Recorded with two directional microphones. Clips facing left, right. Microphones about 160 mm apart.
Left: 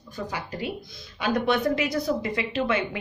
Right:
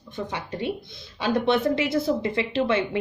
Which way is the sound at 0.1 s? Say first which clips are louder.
Right 2 dB; 25° right (ahead or behind).